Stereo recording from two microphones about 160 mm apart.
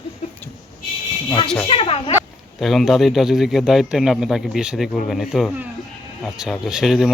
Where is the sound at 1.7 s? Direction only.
40° left (ahead or behind).